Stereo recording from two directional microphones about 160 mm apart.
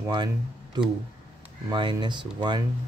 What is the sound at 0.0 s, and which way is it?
Speech, 25° right (ahead or behind).